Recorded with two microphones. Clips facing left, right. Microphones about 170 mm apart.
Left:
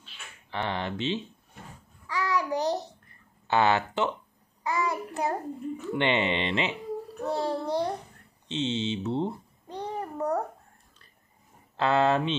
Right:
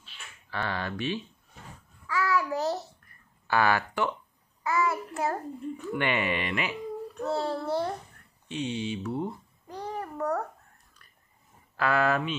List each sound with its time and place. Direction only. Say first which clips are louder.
0.5 s speech: left 2 dB; 20° left (ahead or behind)
2.0 s child singing: right 1 dB; 20° left (ahead or behind)
3.1 s a sound: left 2 dB; 20° left (ahead or behind)
4.6 s child singing: right 1 dB; 20° left (ahead or behind)
5.9 s a child's voice: left 3 dB; 25° left (ahead or behind)
9.8 s babbling: left 1 dB; 20° left (ahead or behind)
11.7 s speech: left 2 dB; 25° left (ahead or behind)